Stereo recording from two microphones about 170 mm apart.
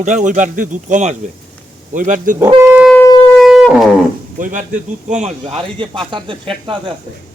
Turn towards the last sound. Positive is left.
turn(degrees=-30)  # may be behind; listen again after turning